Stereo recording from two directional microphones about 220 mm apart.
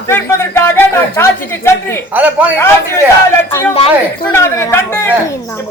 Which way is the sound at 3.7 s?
25° left (ahead or behind).